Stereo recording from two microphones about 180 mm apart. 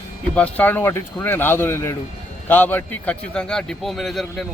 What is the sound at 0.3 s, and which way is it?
Speech, 10° left (ahead or behind).